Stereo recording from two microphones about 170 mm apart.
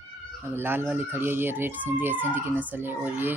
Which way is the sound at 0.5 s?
15° right (ahead or behind).